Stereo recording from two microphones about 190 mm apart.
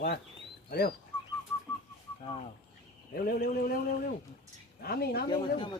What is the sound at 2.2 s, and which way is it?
Speech, 30° left (ahead or behind).